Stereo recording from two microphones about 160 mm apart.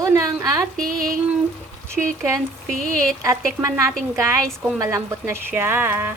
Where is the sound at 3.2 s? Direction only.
20° right (ahead or behind).